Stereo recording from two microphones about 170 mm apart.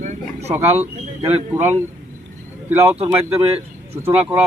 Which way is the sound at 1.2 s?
40° right (ahead or behind).